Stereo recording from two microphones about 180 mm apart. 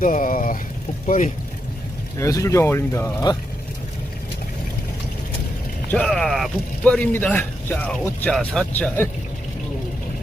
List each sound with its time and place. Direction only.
0.0 s speech: 50° left (ahead or behind)
2.1 s a man's voice: 15° left (ahead or behind)
5.9 s a man's voice: 5° left (ahead or behind)